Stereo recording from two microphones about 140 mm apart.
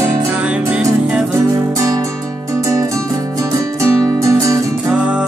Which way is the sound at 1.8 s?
25° right (ahead or behind).